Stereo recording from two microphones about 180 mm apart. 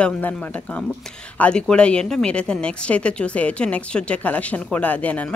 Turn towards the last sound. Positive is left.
turn(degrees=10)  # may be behind; listen again after turning